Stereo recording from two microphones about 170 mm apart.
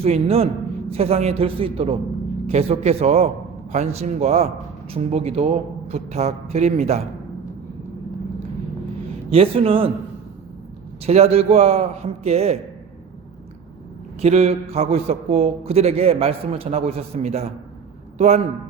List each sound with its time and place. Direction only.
0.0 s a man's voice: 35° right (ahead or behind)
9.3 s a man's voice: 35° right (ahead or behind)
11.0 s a man's voice: 35° right (ahead or behind)
14.2 s a man's voice: 40° right (ahead or behind)